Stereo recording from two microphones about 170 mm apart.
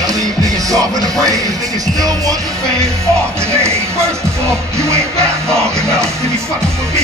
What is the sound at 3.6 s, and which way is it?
Music, 15° right (ahead or behind).